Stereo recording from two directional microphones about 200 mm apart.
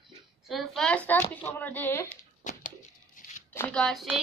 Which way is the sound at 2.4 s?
40° left (ahead or behind).